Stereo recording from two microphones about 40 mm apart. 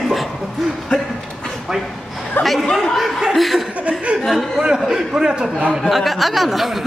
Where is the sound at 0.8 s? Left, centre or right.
Centre.